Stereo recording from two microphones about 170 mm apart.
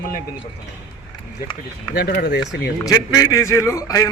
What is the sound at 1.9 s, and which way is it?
Speech, 70° left (ahead or behind).